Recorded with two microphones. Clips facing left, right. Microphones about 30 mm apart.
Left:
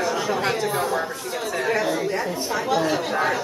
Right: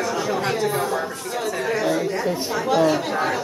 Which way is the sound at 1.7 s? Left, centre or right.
Centre.